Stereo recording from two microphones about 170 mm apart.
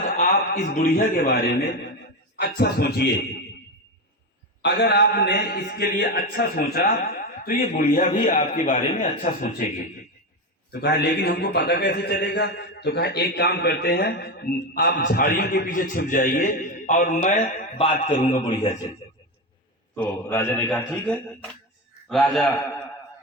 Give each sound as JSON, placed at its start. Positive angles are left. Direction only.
{"t": 0.2, "sound": "a man's voice", "side_deg": 60}
{"t": 4.6, "sound": "a man's voice", "side_deg": 70}
{"t": 10.7, "sound": "a man's voice", "side_deg": 75}
{"t": 18.2, "sound": "a man's voice", "side_deg": 30}
{"t": 20.0, "sound": "a man's voice", "side_deg": 10}